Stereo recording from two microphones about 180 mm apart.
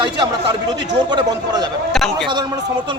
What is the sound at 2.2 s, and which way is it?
Speech, 25° right (ahead or behind).